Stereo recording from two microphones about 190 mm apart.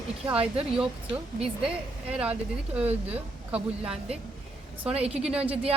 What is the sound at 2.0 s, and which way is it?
A woman's voice, 5° right (ahead or behind).